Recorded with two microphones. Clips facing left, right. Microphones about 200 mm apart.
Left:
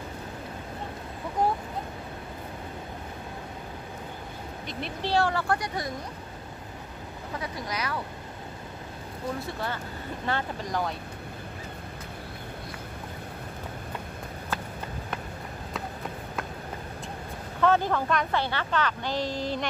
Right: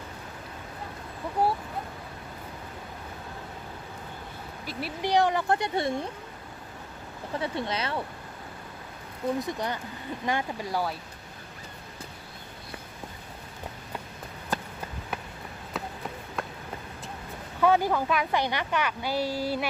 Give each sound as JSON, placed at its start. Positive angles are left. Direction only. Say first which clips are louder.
{"t": 1.4, "sound": "vehicle", "louder": "even", "side_deg": -5}
{"t": 4.6, "sound": "speech", "louder": "right 2 dB", "side_deg": -5}
{"t": 5.1, "sound": "speech", "louder": "right 2 dB", "side_deg": -20}
{"t": 7.3, "sound": "speech", "louder": "right 4 dB", "side_deg": -30}
{"t": 9.4, "sound": "speech", "louder": "right 2 dB", "side_deg": -15}
{"t": 17.6, "sound": "speech", "louder": "right 1 dB", "side_deg": -10}